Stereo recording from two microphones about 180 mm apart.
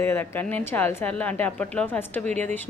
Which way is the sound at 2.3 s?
40° right (ahead or behind).